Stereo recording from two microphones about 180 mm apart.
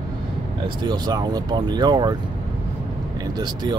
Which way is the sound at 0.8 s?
25° right (ahead or behind).